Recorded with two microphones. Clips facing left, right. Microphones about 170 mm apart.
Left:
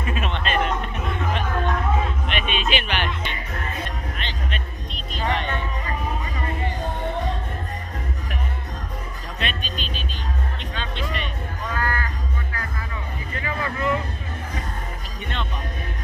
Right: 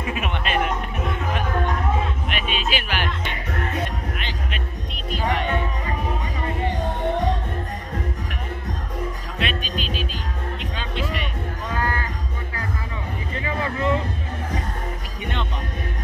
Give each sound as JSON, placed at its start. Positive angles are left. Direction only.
{"t": 0.1, "sound": "a sound", "side_deg": -10}
{"t": 2.2, "sound": "music", "side_deg": -5}
{"t": 4.2, "sound": "music", "side_deg": -10}
{"t": 9.4, "sound": "music", "side_deg": -5}
{"t": 11.7, "sound": "a sound", "side_deg": -20}
{"t": 13.4, "sound": "vehicle", "side_deg": -25}